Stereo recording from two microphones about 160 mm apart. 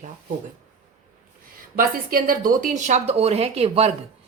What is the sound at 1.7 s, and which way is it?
A woman's voice, 65° right (ahead or behind).